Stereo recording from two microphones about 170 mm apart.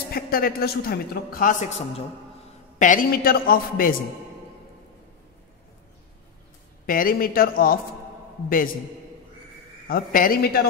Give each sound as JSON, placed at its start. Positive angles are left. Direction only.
{"t": 0.1, "sound": "a man's voice", "side_deg": 60}
{"t": 2.8, "sound": "a man's voice", "side_deg": 50}
{"t": 6.9, "sound": "a man's voice", "side_deg": 55}
{"t": 9.8, "sound": "a man's voice", "side_deg": 55}